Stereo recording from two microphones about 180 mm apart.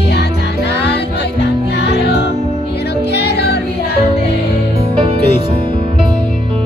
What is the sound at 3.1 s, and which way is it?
Music, 70° left (ahead or behind).